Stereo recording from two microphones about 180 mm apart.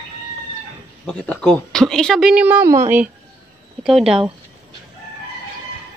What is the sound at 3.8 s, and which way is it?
Speech, centre (ahead or behind).